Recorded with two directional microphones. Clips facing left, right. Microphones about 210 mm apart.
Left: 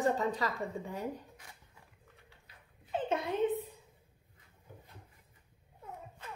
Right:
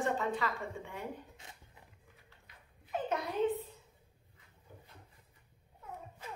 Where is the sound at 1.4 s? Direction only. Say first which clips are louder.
Right 1 dB; 25° right (ahead or behind).